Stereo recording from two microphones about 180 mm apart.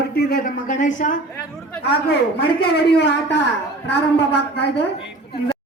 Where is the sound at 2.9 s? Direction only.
75° left (ahead or behind).